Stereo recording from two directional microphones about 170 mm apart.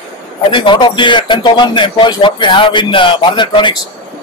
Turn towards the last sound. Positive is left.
turn(degrees=30)  # may be behind; listen again after turning